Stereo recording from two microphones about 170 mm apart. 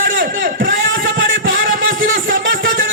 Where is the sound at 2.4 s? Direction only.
90° right.